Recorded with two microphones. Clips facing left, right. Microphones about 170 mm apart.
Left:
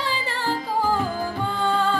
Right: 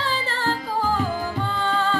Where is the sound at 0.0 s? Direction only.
15° left (ahead or behind).